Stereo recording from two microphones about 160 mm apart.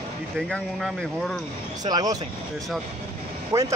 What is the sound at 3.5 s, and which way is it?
Speech, 20° right (ahead or behind).